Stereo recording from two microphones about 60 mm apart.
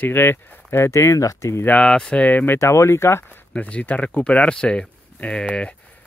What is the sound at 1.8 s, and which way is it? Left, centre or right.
Speech, centre.